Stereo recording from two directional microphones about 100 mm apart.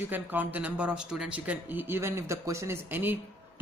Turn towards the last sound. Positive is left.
turn(degrees=-20)  # may be behind; listen again after turning